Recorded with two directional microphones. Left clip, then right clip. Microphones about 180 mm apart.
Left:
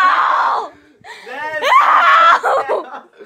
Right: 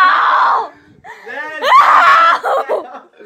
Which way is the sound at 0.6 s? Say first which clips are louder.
Right 2 dB; 25° left (ahead or behind).